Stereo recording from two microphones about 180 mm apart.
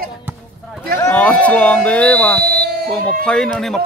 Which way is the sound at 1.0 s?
10° left (ahead or behind).